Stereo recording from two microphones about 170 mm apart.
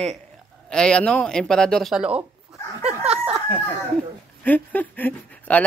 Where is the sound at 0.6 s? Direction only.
5° left (ahead or behind).